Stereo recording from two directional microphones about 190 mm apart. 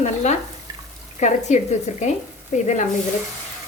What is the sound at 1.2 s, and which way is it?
Speech, 40° left (ahead or behind).